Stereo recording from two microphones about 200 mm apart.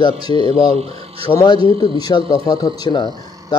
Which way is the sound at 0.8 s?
30° right (ahead or behind).